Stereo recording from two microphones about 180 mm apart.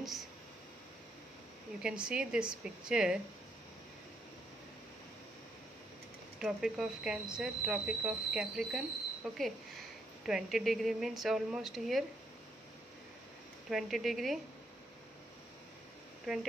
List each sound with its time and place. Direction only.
0.0 s speech: centre (ahead or behind)
1.8 s speech: 5° right (ahead or behind)
6.4 s speech: 5° right (ahead or behind)
13.7 s speech: centre (ahead or behind)
16.3 s speech: centre (ahead or behind)